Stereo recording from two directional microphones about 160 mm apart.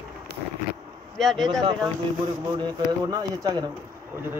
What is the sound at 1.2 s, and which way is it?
Speech, centre (ahead or behind).